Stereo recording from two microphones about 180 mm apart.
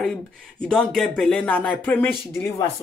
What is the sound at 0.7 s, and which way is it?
Speech, centre (ahead or behind).